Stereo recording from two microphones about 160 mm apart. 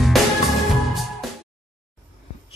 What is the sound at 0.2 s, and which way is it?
Music, centre (ahead or behind).